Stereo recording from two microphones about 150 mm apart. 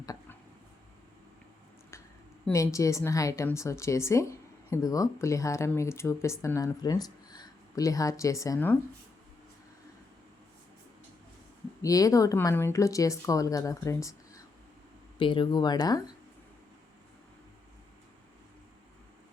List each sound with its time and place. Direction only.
2.5 s speech: 20° left (ahead or behind)
11.8 s speech: 25° left (ahead or behind)
15.2 s speech: 35° left (ahead or behind)